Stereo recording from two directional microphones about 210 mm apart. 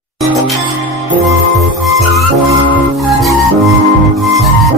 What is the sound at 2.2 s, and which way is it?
Music, 5° right (ahead or behind).